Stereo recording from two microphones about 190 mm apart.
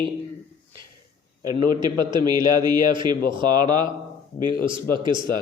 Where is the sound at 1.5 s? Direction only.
20° right (ahead or behind).